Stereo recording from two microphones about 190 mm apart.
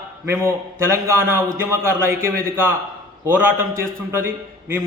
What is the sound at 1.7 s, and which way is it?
A man's voice, 15° right (ahead or behind).